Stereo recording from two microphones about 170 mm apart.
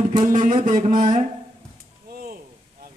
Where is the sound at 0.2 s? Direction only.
50° right (ahead or behind).